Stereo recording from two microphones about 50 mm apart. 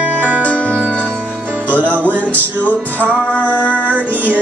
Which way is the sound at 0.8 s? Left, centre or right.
Right.